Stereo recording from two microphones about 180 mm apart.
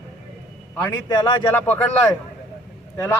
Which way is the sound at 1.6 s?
10° left (ahead or behind).